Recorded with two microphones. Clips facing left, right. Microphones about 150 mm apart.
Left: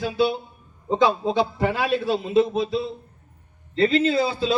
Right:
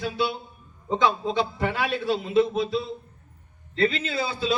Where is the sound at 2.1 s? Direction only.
30° left (ahead or behind).